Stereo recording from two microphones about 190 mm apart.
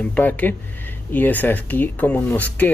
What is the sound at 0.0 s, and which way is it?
Speech, 5° left (ahead or behind).